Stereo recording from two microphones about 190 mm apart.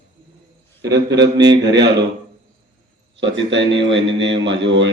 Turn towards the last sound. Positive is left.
turn(degrees=-70)  # may be behind; listen again after turning